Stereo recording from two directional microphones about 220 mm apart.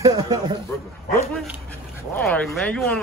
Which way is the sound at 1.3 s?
Centre (ahead or behind).